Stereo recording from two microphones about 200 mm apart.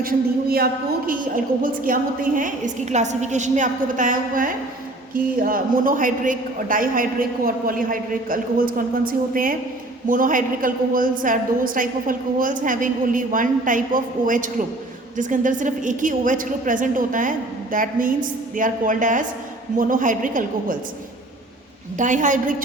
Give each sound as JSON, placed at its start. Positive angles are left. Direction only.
{"t": 0.0, "sound": "a woman's voice", "side_deg": -50}
{"t": 21.9, "sound": "a woman's voice", "side_deg": -40}